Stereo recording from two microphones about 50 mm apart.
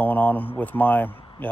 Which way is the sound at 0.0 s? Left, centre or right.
Left.